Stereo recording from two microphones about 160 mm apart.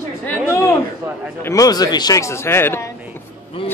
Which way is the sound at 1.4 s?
20° left (ahead or behind).